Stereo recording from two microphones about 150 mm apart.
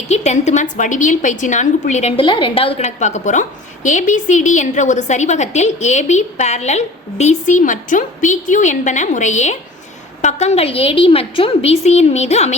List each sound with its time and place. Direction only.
0.1 s a woman's voice: 50° left (ahead or behind)
2.2 s a woman's voice: 35° left (ahead or behind)